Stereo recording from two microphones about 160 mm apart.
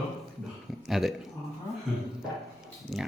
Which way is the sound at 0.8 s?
Centre (ahead or behind).